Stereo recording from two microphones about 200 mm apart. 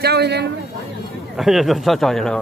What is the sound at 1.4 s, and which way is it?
Speech, centre (ahead or behind).